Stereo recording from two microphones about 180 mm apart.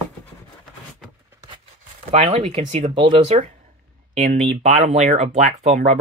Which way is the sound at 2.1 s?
35° right (ahead or behind).